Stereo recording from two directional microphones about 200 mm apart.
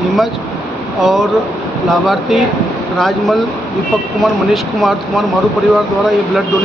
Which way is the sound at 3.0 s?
Centre (ahead or behind).